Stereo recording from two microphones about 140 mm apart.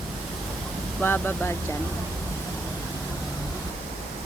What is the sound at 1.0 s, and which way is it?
Speech, 15° left (ahead or behind).